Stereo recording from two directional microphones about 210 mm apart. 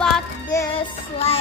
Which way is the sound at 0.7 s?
30° left (ahead or behind).